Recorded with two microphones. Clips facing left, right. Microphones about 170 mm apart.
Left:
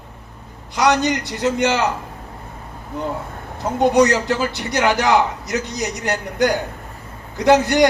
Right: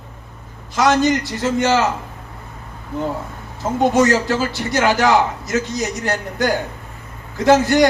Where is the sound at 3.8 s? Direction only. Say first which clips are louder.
Even; 20° left (ahead or behind).